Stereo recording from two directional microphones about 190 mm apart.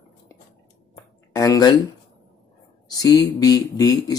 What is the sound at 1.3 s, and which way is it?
Speech, 20° left (ahead or behind).